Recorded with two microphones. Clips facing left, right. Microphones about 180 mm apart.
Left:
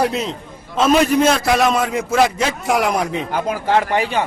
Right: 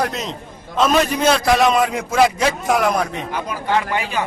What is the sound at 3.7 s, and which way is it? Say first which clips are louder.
Speech: left 3 dB; 35° left (ahead or behind).